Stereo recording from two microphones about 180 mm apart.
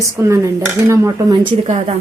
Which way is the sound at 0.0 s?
15° right (ahead or behind).